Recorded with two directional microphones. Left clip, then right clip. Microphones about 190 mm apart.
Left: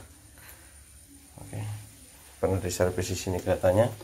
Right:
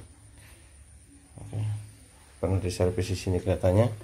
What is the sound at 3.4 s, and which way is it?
Speech, 25° right (ahead or behind).